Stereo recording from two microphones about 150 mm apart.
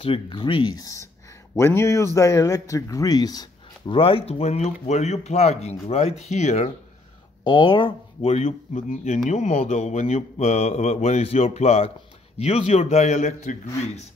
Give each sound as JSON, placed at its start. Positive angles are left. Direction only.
{"t": 0.0, "sound": "a man's voice", "side_deg": 35}
{"t": 7.4, "sound": "speech", "side_deg": 30}
{"t": 8.2, "sound": "mantra", "side_deg": 45}